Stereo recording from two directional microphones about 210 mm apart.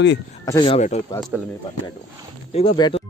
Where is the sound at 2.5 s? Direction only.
25° left (ahead or behind).